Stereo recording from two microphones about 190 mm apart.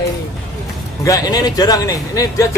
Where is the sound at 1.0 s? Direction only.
20° left (ahead or behind).